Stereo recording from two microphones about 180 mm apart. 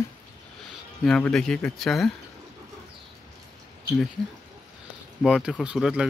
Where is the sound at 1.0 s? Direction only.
5° left (ahead or behind).